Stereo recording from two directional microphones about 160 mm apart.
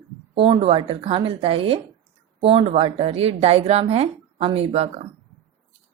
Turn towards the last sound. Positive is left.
turn(degrees=-40)  # may be behind; listen again after turning